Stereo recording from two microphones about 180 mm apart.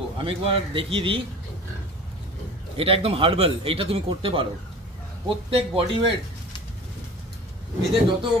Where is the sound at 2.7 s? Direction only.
30° right (ahead or behind).